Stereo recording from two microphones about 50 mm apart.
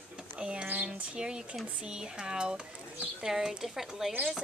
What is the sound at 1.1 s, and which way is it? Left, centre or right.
Speech, centre.